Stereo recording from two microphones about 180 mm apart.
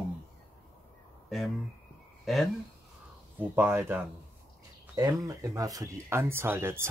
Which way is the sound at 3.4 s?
10° right (ahead or behind).